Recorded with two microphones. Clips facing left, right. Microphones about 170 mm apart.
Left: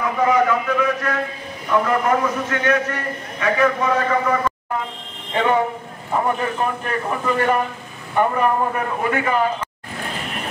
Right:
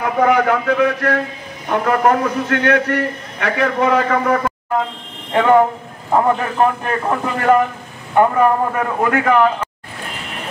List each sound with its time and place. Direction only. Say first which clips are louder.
0.0 s a man's voice: right 3 dB; 70° right (ahead or behind)
6.1 s a man's voice: right 5 dB; 70° right (ahead or behind)